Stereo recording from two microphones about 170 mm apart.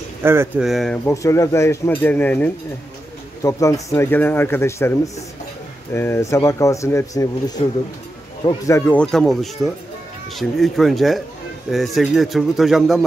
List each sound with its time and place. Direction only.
0.2 s speech: 15° right (ahead or behind)
0.7 s a man's voice: centre (ahead or behind)
1.0 s speech: 20° left (ahead or behind)
8.6 s a man's voice: 15° left (ahead or behind); by 13.0 s centre (ahead or behind)